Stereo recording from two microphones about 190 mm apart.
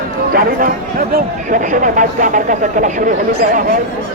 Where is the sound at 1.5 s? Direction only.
45° right (ahead or behind).